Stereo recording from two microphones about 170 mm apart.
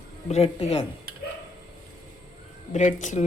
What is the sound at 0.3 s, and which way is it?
Speech, 40° left (ahead or behind).